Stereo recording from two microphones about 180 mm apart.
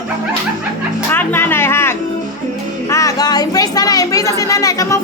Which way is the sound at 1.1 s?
10° left (ahead or behind).